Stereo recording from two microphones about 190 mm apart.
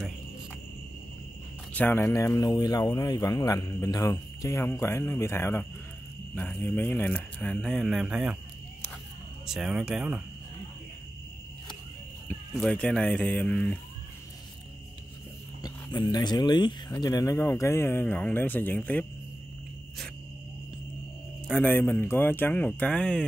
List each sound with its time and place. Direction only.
1.7 s speech: 10° left (ahead or behind)
9.5 s speech: 5° right (ahead or behind)
12.3 s speech: 10° left (ahead or behind)
15.6 s speech: 20° left (ahead or behind)
21.5 s speech: 5° left (ahead or behind)